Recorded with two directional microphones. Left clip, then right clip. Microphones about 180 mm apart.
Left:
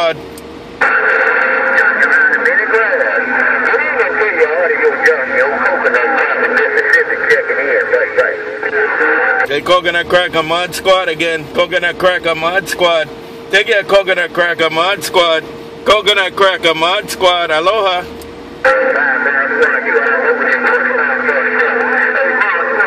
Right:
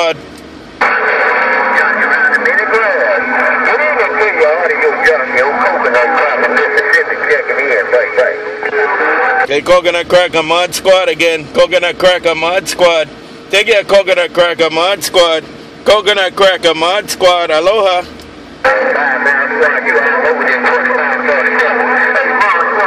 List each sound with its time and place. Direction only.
0.7 s a sound: 45° right (ahead or behind)
8.7 s speech: 40° right (ahead or behind)
18.6 s music: 45° right (ahead or behind)